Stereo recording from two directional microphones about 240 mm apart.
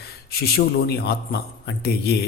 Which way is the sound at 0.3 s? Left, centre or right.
Left.